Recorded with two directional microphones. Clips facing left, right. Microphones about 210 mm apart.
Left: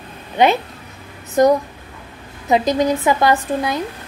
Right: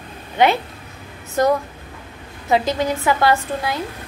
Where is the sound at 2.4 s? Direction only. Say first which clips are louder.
Left 3 dB; 20° left (ahead or behind).